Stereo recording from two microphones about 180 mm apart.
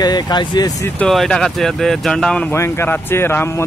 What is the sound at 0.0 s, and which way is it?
Speech, 20° left (ahead or behind).